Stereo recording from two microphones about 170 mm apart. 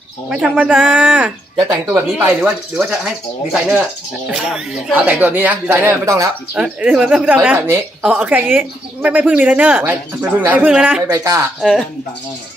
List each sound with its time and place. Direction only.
0.6 s speech: 5° right (ahead or behind)
11.1 s speech: 20° right (ahead or behind)